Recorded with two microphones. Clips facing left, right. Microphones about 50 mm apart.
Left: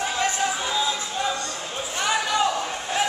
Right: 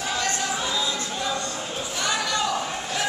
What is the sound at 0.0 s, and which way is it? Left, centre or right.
Music, centre.